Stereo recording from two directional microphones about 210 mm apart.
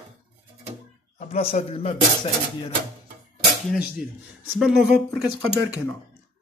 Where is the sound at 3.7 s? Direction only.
5° right (ahead or behind).